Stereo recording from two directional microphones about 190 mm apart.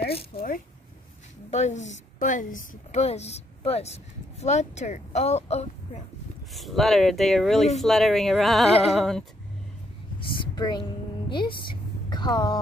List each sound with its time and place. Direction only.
0.0 s a sound: 55° left (ahead or behind)
1.5 s a woman's voice: 35° left (ahead or behind)
6.5 s speech: centre (ahead or behind)
10.4 s a woman's voice: 25° left (ahead or behind)